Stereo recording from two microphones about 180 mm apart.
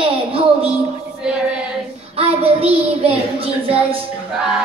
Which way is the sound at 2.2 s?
35° right (ahead or behind).